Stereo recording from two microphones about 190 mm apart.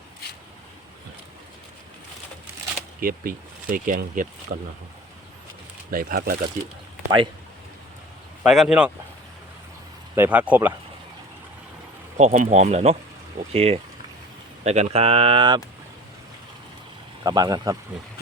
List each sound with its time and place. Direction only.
3.0 s speech: 50° right (ahead or behind)
5.9 s speech: 50° right (ahead or behind)
8.4 s speech: 5° right (ahead or behind)
10.2 s speech: 10° right (ahead or behind)
12.1 s speech: 40° right (ahead or behind); by 15.6 s 25° right (ahead or behind)
17.2 s speech: 20° right (ahead or behind)